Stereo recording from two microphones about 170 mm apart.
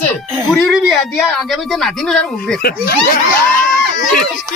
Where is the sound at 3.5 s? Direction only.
55° left (ahead or behind).